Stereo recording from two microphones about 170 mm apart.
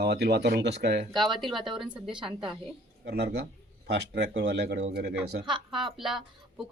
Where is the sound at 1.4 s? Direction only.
Centre (ahead or behind).